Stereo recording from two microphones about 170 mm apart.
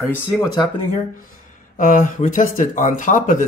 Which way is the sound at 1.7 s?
50° left (ahead or behind).